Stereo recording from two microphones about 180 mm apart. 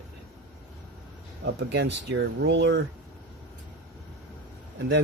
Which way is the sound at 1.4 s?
70° right (ahead or behind).